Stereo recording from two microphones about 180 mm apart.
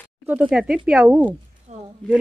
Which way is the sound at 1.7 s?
40° right (ahead or behind).